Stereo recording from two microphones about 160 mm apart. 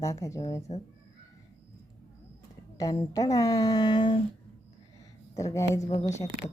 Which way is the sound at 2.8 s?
25° left (ahead or behind).